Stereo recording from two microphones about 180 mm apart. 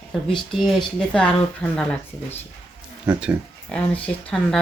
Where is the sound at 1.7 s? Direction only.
5° left (ahead or behind).